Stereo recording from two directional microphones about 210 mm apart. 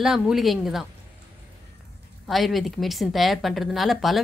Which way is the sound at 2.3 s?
Centre (ahead or behind).